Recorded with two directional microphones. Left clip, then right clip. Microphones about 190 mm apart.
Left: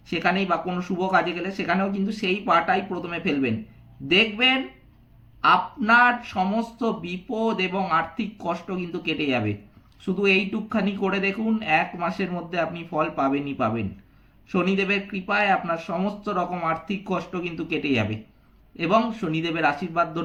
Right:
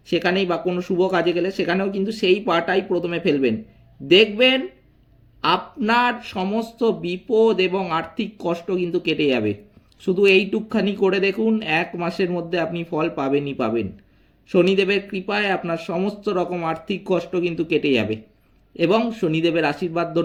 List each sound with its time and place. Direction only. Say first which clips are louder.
0.1 s speech: right 3 dB; 45° right (ahead or behind)